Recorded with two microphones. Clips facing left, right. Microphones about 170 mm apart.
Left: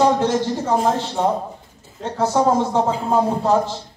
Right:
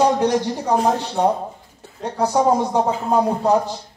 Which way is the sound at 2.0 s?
15° right (ahead or behind).